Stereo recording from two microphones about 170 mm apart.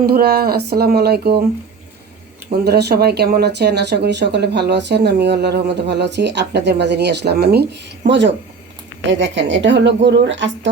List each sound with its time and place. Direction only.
0.0 s speech: 65° right (ahead or behind)
2.5 s a woman's voice: 70° right (ahead or behind); by 10.7 s 90° right